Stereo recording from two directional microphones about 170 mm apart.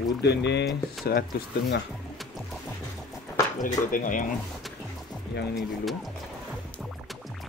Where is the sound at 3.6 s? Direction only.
50° left (ahead or behind).